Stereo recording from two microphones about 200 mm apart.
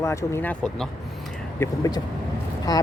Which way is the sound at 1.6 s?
20° left (ahead or behind).